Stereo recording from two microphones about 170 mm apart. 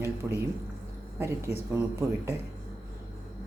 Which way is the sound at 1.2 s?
15° right (ahead or behind).